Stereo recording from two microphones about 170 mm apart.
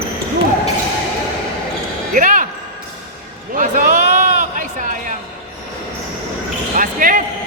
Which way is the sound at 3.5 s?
50° right (ahead or behind).